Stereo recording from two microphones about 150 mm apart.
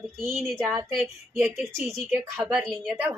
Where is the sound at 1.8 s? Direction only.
Centre (ahead or behind).